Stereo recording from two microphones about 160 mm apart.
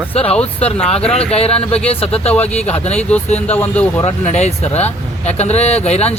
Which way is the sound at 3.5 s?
10° left (ahead or behind).